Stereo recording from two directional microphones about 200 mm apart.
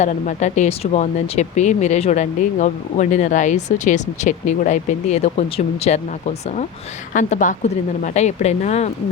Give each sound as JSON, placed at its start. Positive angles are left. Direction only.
{"t": 0.0, "sound": "speech", "side_deg": 35}